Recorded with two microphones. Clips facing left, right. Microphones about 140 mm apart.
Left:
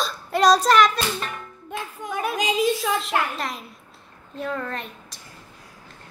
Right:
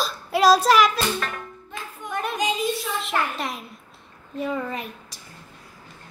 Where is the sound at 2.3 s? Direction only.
90° left.